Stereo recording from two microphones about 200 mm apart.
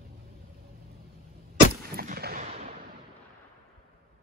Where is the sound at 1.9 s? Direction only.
50° right (ahead or behind).